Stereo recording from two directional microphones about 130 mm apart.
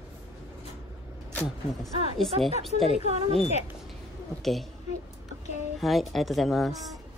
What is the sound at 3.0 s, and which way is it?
Speech, 50° right (ahead or behind).